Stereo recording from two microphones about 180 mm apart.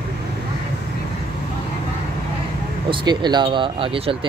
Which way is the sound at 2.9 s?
25° right (ahead or behind).